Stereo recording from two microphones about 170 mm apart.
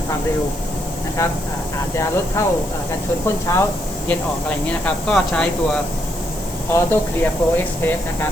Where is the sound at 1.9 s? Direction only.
15° left (ahead or behind).